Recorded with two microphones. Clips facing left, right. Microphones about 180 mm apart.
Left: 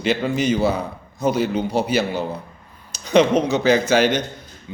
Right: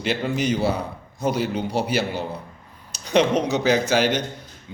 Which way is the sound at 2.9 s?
10° right (ahead or behind).